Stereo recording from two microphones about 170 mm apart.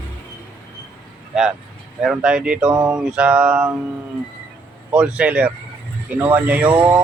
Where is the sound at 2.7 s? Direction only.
20° right (ahead or behind).